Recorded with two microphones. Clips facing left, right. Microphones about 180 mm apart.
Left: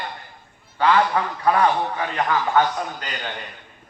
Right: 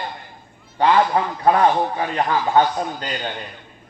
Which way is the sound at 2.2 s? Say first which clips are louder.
Right 1 dB; 20° right (ahead or behind).